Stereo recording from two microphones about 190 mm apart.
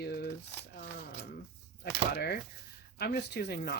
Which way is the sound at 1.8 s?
55° left (ahead or behind).